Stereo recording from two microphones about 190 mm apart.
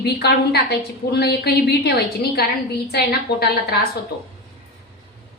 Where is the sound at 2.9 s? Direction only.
55° left (ahead or behind).